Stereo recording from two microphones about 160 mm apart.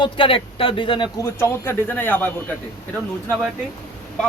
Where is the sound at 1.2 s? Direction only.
15° left (ahead or behind).